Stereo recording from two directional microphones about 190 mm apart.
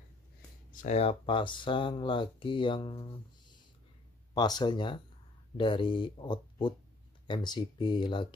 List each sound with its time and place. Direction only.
0.8 s speech: 35° left (ahead or behind)
4.3 s speech: 20° left (ahead or behind)